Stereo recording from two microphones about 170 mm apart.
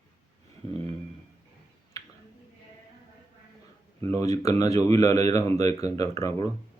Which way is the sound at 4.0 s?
15° left (ahead or behind).